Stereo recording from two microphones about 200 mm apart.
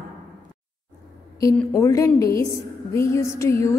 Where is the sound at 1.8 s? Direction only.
15° left (ahead or behind).